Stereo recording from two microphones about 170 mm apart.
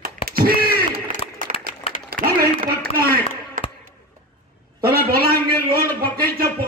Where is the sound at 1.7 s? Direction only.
50° left (ahead or behind).